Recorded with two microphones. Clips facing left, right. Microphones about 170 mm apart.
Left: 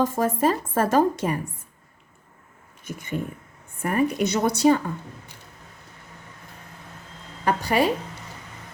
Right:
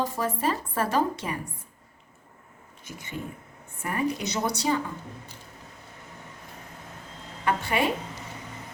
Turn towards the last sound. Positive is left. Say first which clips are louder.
# left 4 dB
turn(degrees=40)  # may be behind; listen again after turning